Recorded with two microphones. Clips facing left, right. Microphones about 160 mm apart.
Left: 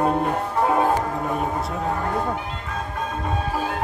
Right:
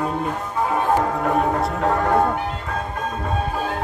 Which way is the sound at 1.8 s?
90° right.